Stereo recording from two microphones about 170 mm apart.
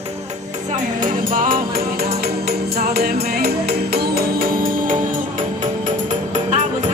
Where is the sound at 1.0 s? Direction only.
55° right (ahead or behind).